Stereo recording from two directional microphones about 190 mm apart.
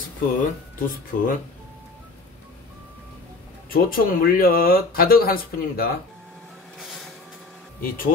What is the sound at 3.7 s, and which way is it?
Speech, 50° left (ahead or behind).